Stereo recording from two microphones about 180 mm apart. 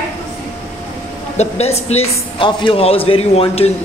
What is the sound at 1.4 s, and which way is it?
A man's voice, 35° left (ahead or behind).